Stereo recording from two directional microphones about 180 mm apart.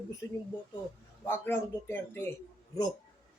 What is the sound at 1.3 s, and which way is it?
A woman's voice, 15° left (ahead or behind).